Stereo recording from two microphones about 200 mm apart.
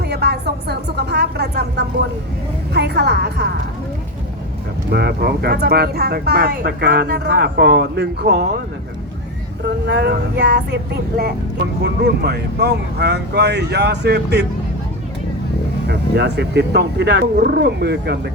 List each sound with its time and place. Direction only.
0.1 s a sound: 55° right (ahead or behind)
2.7 s speech: 55° right (ahead or behind)
4.9 s speech: 55° right (ahead or behind)
9.6 s speech: 55° right (ahead or behind)
11.8 s speech: 55° right (ahead or behind)
15.9 s speech: 55° right (ahead or behind)